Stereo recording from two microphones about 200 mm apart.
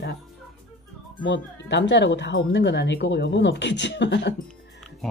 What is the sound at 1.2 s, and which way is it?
Speech, 60° left (ahead or behind).